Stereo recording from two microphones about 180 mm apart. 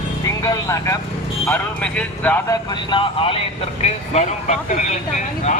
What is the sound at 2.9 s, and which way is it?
Speech, 30° left (ahead or behind).